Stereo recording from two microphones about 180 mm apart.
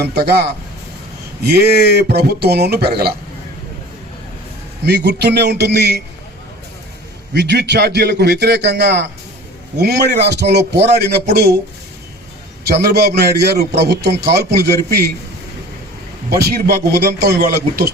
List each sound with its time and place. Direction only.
0.0 s a man's voice: 65° right (ahead or behind)
4.9 s a man's voice: 65° right (ahead or behind)
7.3 s a man's voice: 70° right (ahead or behind)
12.6 s a man's voice: 65° right (ahead or behind)
16.3 s a man's voice: 60° right (ahead or behind)